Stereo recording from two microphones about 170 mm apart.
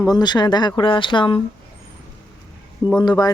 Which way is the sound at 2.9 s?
25° left (ahead or behind).